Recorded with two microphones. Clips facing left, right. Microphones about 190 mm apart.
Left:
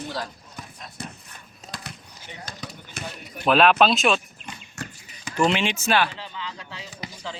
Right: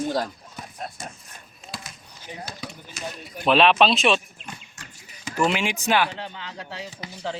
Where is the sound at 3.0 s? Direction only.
55° left (ahead or behind).